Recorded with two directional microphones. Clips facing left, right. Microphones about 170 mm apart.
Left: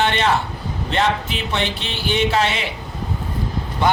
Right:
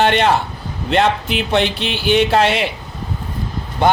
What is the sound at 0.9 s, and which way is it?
Speech, 70° right (ahead or behind).